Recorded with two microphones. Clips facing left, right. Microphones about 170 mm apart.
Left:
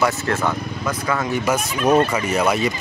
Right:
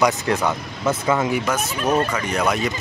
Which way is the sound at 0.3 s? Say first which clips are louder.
Even; 15° right (ahead or behind).